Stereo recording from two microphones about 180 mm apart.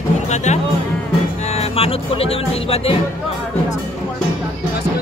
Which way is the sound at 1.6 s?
35° left (ahead or behind).